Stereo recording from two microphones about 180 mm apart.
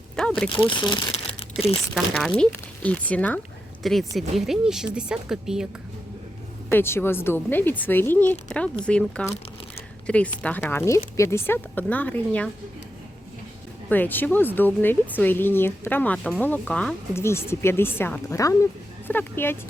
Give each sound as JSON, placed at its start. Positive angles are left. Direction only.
{"t": 0.2, "sound": "speech", "side_deg": 5}
{"t": 0.6, "sound": "speech", "side_deg": 25}
{"t": 1.1, "sound": "crumpling", "side_deg": 35}
{"t": 2.1, "sound": "a woman's voice", "side_deg": 5}
{"t": 6.7, "sound": "a woman's voice", "side_deg": 15}
{"t": 13.9, "sound": "speech", "side_deg": 10}